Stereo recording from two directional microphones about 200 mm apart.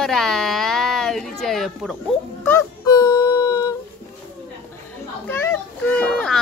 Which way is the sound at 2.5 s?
15° left (ahead or behind).